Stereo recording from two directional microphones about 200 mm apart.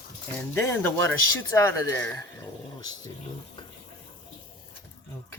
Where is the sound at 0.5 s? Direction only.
10° left (ahead or behind).